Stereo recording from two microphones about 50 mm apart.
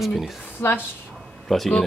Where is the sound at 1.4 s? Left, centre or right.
Centre.